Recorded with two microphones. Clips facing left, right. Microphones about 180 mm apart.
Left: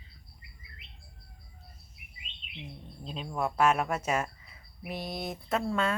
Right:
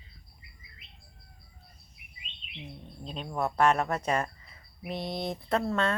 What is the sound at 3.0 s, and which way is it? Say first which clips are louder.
Speech: right 1 dB; centre (ahead or behind).